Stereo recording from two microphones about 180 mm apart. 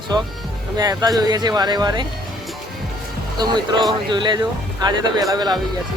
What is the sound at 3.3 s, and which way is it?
Speech, 25° right (ahead or behind).